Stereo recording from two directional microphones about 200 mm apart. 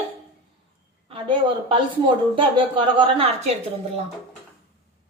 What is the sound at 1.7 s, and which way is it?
A woman's voice, 25° right (ahead or behind).